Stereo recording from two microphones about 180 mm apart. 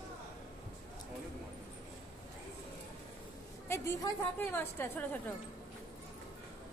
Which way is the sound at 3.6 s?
15° left (ahead or behind).